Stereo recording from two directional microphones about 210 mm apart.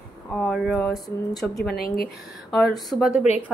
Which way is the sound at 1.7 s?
45° left (ahead or behind).